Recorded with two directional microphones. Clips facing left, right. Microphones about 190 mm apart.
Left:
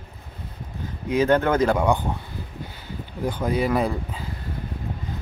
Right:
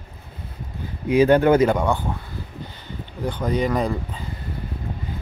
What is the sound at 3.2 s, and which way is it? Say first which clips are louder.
Speech: right 1 dB; 10° left (ahead or behind).